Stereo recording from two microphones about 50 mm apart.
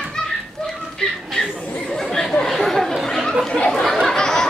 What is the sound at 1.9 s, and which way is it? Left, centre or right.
Speech, centre.